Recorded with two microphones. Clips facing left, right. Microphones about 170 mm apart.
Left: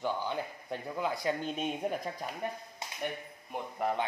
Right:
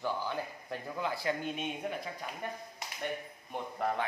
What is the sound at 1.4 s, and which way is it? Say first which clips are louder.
Speech: left 3 dB; 35° left (ahead or behind).